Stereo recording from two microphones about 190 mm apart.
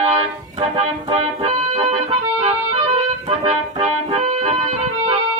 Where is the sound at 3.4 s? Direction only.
35° right (ahead or behind).